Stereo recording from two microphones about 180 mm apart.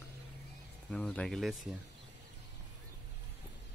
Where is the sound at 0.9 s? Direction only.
5° left (ahead or behind).